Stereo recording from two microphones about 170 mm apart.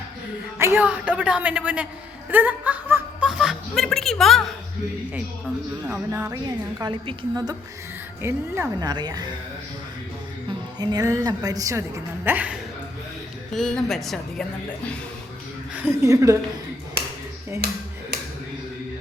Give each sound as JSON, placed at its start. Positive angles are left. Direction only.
{"t": 0.6, "sound": "a woman's voice", "side_deg": -10}
{"t": 5.8, "sound": "a woman's voice", "side_deg": -10}
{"t": 10.8, "sound": "a woman's voice", "side_deg": -20}
{"t": 13.5, "sound": "speech", "side_deg": 5}
{"t": 15.7, "sound": "a woman's voice", "side_deg": -15}